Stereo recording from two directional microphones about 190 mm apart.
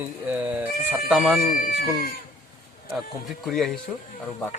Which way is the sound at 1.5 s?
45° left (ahead or behind).